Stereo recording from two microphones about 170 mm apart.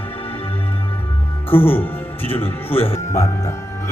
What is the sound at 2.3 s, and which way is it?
Speech, 35° left (ahead or behind).